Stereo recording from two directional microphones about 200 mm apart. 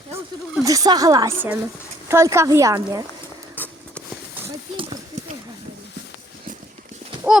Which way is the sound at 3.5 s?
10° left (ahead or behind).